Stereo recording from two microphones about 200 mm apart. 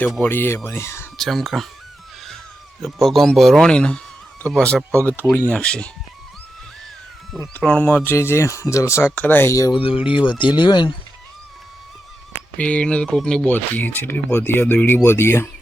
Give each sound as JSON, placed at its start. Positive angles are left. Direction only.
{"t": 0.0, "sound": "speech", "side_deg": 5}
{"t": 1.2, "sound": "a man's voice", "side_deg": 0}
{"t": 2.8, "sound": "a man's voice", "side_deg": 0}
{"t": 7.3, "sound": "speech", "side_deg": 5}
{"t": 12.5, "sound": "speech", "side_deg": 5}